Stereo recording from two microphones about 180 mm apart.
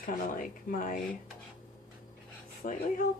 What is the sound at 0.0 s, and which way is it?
Speech, 50° left (ahead or behind).